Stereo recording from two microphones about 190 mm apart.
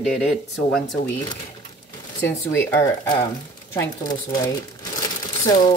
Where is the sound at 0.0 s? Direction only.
Centre (ahead or behind).